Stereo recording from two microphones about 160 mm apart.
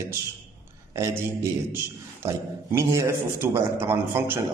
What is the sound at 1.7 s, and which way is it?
A man's voice, 15° right (ahead or behind).